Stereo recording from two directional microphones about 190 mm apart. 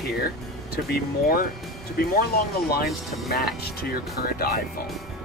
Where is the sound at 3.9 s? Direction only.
55° left (ahead or behind).